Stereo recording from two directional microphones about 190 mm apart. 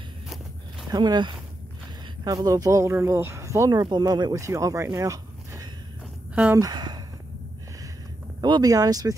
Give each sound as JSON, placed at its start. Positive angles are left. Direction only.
{"t": 0.8, "sound": "speech", "side_deg": -20}
{"t": 6.3, "sound": "speech", "side_deg": -5}
{"t": 6.6, "sound": "speech", "side_deg": -20}
{"t": 8.4, "sound": "speech", "side_deg": -20}